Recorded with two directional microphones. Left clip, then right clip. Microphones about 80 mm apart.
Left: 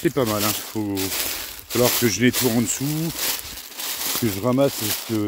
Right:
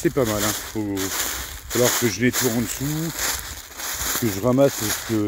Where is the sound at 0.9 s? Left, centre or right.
Centre.